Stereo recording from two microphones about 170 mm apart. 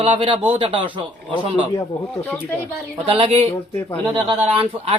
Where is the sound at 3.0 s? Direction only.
30° right (ahead or behind).